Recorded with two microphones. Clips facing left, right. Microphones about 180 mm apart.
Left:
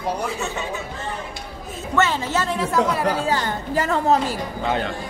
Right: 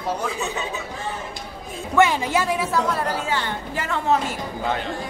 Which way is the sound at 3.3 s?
40° left (ahead or behind).